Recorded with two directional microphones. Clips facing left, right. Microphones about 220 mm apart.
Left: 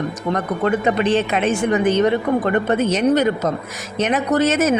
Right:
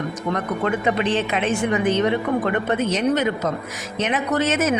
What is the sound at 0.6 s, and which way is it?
Speech, 40° left (ahead or behind).